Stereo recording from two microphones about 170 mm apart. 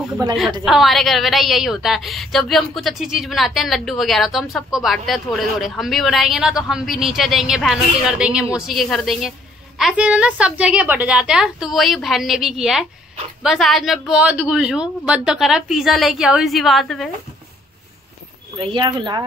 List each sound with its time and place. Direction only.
0.2 s speech: 20° right (ahead or behind)
0.7 s a woman's voice: centre (ahead or behind)
18.6 s speech: 30° right (ahead or behind)